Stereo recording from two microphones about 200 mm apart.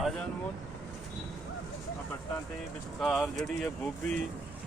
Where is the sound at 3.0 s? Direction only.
Centre (ahead or behind).